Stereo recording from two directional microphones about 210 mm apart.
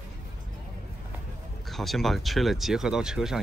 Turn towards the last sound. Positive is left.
turn(degrees=0)  # may be behind; listen again after turning